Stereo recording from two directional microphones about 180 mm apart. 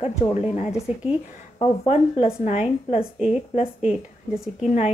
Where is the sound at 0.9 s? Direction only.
35° left (ahead or behind).